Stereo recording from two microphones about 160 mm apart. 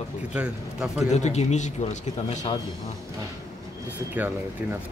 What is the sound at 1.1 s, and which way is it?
Speech, 45° left (ahead or behind).